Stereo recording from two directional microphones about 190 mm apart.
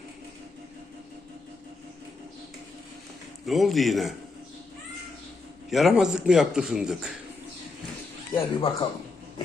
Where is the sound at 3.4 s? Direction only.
Centre (ahead or behind).